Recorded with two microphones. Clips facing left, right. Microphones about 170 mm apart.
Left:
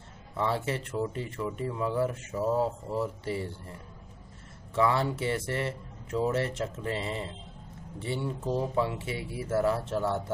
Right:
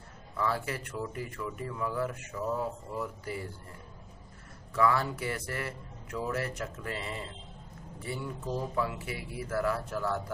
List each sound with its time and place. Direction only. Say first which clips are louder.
0.4 s speech: left 3 dB; 25° left (ahead or behind)
4.7 s speech: left 2 dB; 25° left (ahead or behind)